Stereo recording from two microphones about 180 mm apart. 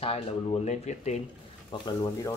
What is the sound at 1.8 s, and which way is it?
Speech, 20° left (ahead or behind).